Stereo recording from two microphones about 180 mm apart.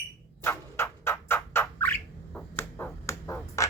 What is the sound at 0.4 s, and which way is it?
Squawk, 15° left (ahead or behind).